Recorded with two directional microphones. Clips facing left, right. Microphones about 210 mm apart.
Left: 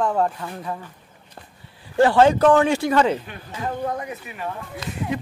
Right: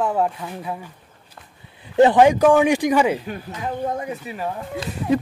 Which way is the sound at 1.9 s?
20° right (ahead or behind).